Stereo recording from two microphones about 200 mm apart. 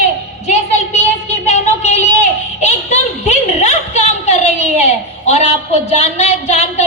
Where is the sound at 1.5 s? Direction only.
35° left (ahead or behind).